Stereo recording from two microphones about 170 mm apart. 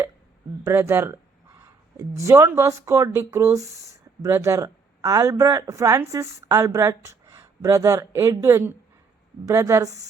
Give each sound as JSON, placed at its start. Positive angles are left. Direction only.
{"t": 0.6, "sound": "speech", "side_deg": -15}